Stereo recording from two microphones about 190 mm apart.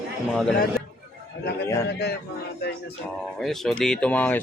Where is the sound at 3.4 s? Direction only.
Centre (ahead or behind).